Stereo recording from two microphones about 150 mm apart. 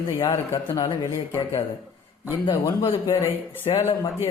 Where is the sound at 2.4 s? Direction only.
35° left (ahead or behind).